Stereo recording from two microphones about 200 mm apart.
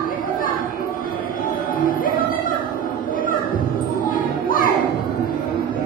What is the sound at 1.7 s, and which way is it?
Music, 45° left (ahead or behind).